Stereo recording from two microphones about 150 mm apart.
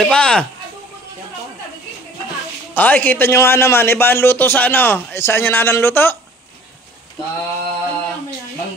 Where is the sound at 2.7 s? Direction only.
10° left (ahead or behind).